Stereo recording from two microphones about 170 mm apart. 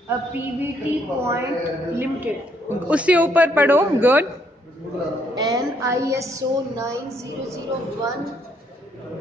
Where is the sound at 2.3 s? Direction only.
10° right (ahead or behind).